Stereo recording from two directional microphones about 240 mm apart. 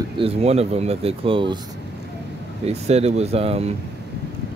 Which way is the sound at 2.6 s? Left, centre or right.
Right.